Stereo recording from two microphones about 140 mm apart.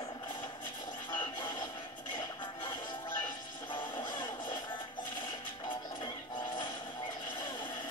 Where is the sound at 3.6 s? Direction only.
35° left (ahead or behind).